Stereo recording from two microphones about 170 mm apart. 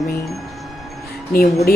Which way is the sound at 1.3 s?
65° left (ahead or behind).